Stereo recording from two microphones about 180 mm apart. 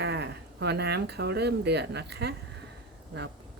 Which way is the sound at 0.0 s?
65° right (ahead or behind).